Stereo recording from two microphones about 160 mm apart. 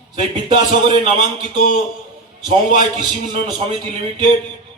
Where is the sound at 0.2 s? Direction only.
30° right (ahead or behind).